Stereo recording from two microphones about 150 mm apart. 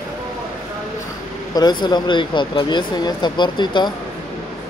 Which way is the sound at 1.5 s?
30° left (ahead or behind).